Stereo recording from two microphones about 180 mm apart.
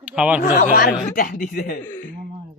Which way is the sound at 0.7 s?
55° left (ahead or behind).